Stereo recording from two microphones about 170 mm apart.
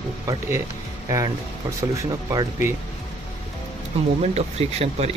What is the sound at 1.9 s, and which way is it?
Speech, 20° right (ahead or behind).